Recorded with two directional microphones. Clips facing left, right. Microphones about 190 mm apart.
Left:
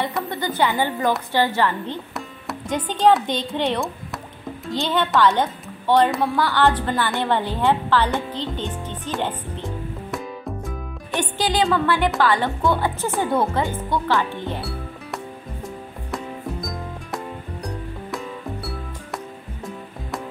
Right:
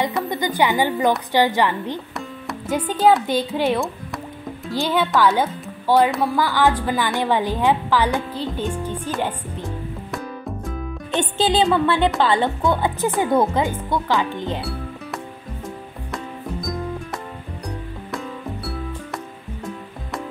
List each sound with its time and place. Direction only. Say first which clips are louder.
0.3 s speech: right 1 dB; 15° right (ahead or behind)
2.1 s speech: right 1 dB; 5° right (ahead or behind)
10.1 s music: even; centre (ahead or behind)
11.1 s music: right 3 dB; 25° right (ahead or behind)
12.2 s speech: right 1 dB; 25° right (ahead or behind)
14.6 s music: right 2 dB; centre (ahead or behind)
17.6 s music: even; centre (ahead or behind)